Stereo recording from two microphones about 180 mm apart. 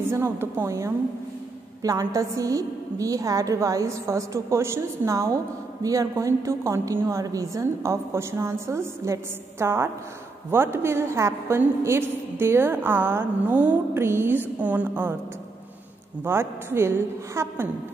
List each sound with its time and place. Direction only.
0.1 s a woman's voice: 15° right (ahead or behind)
16.3 s a woman's voice: 15° right (ahead or behind)